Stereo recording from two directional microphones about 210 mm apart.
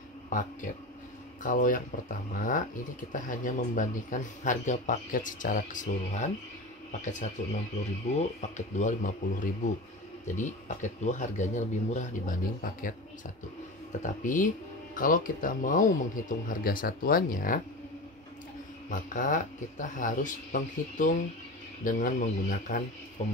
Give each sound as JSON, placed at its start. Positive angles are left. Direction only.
{"t": 0.3, "sound": "a man's voice", "side_deg": 40}
{"t": 14.0, "sound": "a man's voice", "side_deg": 40}
{"t": 18.9, "sound": "a man's voice", "side_deg": 40}